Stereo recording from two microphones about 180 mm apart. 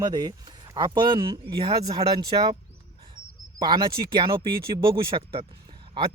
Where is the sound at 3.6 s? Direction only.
25° right (ahead or behind).